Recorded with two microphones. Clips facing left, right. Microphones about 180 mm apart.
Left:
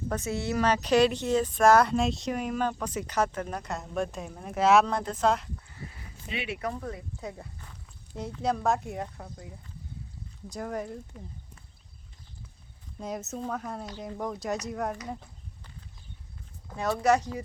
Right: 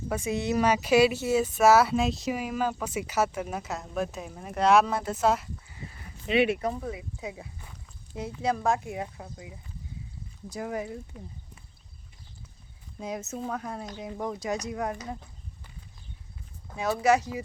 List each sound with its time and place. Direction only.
0.1 s speech: 15° right (ahead or behind)
6.2 s speech: 70° right (ahead or behind)
6.7 s speech: 5° right (ahead or behind)
13.0 s speech: centre (ahead or behind)
16.7 s speech: 5° right (ahead or behind)